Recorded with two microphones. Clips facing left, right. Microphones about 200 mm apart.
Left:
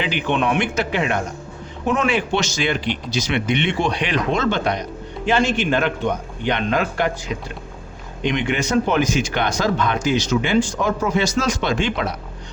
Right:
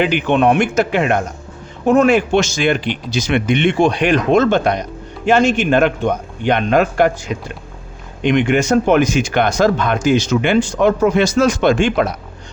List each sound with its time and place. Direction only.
0.0 s speech: 50° right (ahead or behind)
8.2 s speech: 50° right (ahead or behind)